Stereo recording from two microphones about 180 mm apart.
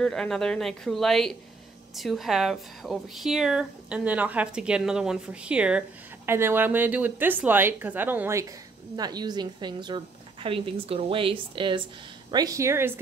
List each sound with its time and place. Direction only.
0.0 s a woman's voice: 5° left (ahead or behind); by 13.0 s 15° right (ahead or behind)